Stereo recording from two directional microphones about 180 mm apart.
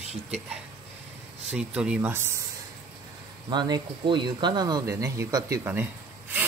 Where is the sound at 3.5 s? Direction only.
25° right (ahead or behind).